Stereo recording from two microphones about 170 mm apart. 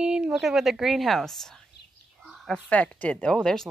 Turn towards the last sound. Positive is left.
turn(degrees=5)  # may be behind; listen again after turning